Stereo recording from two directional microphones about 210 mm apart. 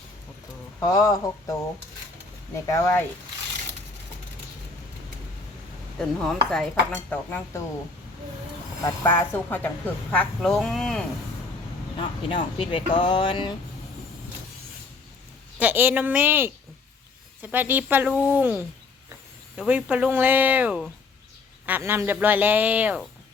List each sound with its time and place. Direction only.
0.8 s speech: 15° left (ahead or behind)
2.6 s speech: 10° left (ahead or behind)
6.0 s speech: 5° left (ahead or behind)
9.0 s speech: 10° left (ahead or behind)
11.9 s speech: 25° left (ahead or behind)
15.5 s speech: 10° right (ahead or behind)